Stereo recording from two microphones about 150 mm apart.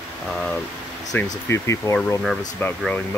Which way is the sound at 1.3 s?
20° left (ahead or behind).